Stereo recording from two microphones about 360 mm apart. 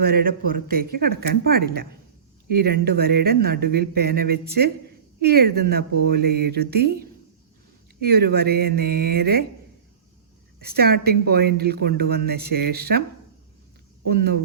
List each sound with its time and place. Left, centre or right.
0.0 s a woman's voice: right
10.6 s a woman's voice: right
14.1 s a woman's voice: right